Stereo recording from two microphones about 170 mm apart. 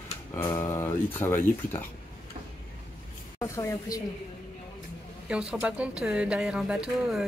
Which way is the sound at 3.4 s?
20° left (ahead or behind).